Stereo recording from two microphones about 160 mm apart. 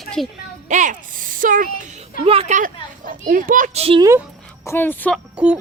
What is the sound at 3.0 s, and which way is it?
Speech, 60° right (ahead or behind).